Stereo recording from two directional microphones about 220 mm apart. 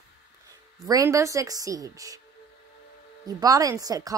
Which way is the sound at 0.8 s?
15° right (ahead or behind).